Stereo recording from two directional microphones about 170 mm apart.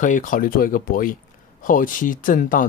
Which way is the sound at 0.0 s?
50° left (ahead or behind).